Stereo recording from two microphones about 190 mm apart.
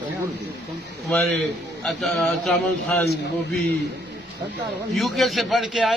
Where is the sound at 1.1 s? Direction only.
5° left (ahead or behind).